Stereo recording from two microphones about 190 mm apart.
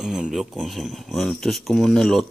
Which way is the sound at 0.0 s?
Centre (ahead or behind).